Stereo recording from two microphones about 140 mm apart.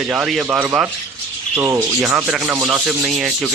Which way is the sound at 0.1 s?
5° right (ahead or behind).